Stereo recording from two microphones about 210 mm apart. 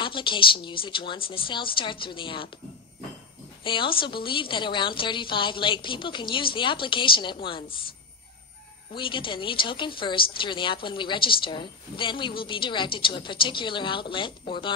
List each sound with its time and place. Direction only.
0.0 s a woman's voice: 25° left (ahead or behind)
3.6 s a woman's voice: 25° left (ahead or behind)
8.9 s a woman's voice: 25° left (ahead or behind)